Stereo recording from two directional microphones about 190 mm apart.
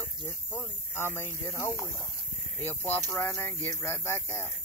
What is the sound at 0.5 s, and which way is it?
Speech, 10° left (ahead or behind).